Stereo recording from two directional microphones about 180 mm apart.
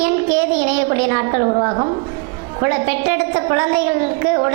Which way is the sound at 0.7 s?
15° right (ahead or behind).